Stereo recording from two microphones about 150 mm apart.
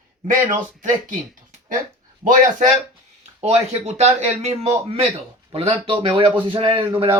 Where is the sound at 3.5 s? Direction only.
45° right (ahead or behind).